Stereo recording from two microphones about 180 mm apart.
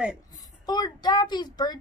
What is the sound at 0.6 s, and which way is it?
A child's voice, 20° left (ahead or behind).